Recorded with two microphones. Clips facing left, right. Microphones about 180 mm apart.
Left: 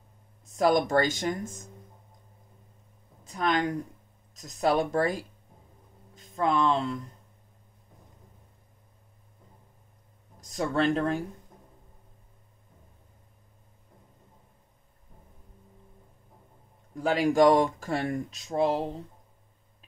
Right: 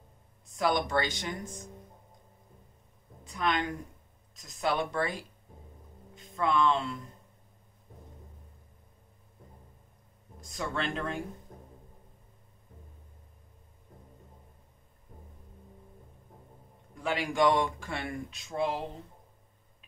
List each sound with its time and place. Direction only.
0.6 s speech: 45° left (ahead or behind)
3.3 s speech: 40° left (ahead or behind)
10.4 s speech: 40° left (ahead or behind)
17.0 s speech: 40° left (ahead or behind)